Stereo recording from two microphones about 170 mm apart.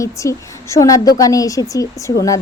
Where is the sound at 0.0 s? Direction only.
15° left (ahead or behind).